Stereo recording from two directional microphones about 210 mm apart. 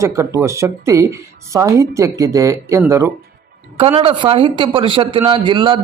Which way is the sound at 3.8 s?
25° right (ahead or behind).